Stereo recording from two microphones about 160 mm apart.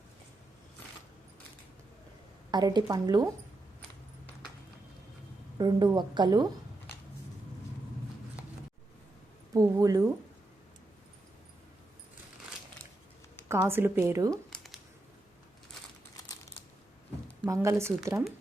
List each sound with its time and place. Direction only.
2.5 s a woman's voice: 25° right (ahead or behind)
5.5 s a woman's voice: 25° right (ahead or behind)
9.6 s a woman's voice: 20° right (ahead or behind)
13.5 s a woman's voice: 15° right (ahead or behind)
14.5 s a sound: centre (ahead or behind)
17.5 s a woman's voice: 15° right (ahead or behind)